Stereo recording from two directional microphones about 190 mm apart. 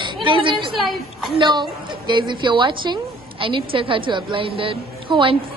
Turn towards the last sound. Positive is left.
turn(degrees=-25)  # may be behind; listen again after turning